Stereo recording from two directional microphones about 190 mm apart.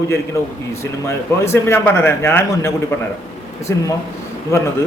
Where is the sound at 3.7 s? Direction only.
15° left (ahead or behind).